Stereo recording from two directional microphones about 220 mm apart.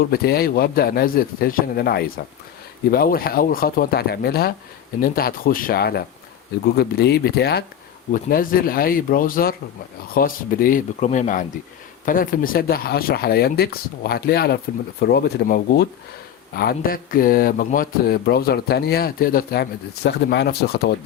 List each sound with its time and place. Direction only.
0.1 s speech: 45° left (ahead or behind)